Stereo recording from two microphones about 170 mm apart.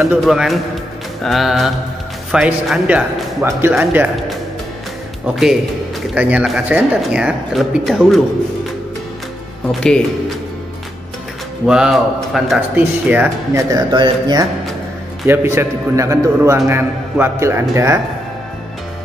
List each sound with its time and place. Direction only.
0.0 s speech: centre (ahead or behind)
5.2 s speech: centre (ahead or behind)
9.7 s speech: 5° left (ahead or behind)
11.6 s speech: 5° right (ahead or behind)